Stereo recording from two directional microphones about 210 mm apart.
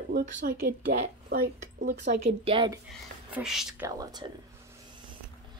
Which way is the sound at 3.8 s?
15° right (ahead or behind).